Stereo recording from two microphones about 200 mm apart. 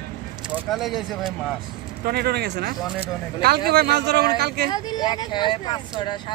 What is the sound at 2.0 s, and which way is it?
Speech, 50° right (ahead or behind).